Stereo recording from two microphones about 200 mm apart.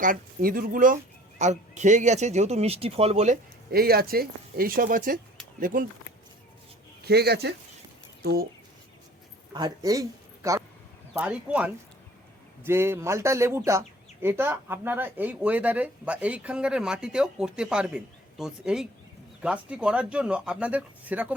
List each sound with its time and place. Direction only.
0.0 s speech: 45° right (ahead or behind)
3.7 s speech: 50° right (ahead or behind)
7.0 s speech: 55° right (ahead or behind)
9.5 s speech: 20° right (ahead or behind)
11.1 s speech: 5° right (ahead or behind)